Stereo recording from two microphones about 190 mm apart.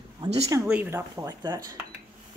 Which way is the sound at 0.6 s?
5° right (ahead or behind).